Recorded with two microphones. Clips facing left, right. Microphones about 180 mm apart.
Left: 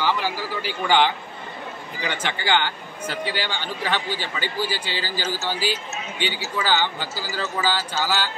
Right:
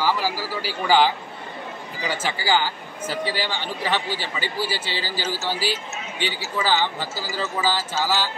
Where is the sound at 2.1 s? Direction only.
5° right (ahead or behind).